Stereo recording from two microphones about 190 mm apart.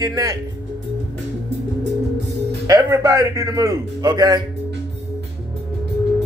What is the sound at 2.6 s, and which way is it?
A man's voice, 15° right (ahead or behind).